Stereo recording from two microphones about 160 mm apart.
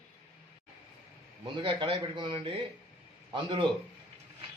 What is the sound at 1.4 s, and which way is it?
A man's voice, 30° right (ahead or behind).